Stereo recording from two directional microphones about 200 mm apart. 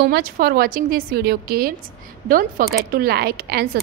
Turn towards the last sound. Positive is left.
turn(degrees=-50)  # may be behind; listen again after turning